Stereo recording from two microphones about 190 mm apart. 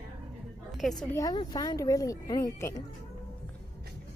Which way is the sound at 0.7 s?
Centre (ahead or behind).